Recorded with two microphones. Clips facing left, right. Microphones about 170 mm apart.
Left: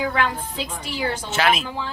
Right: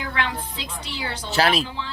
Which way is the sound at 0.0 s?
45° left (ahead or behind).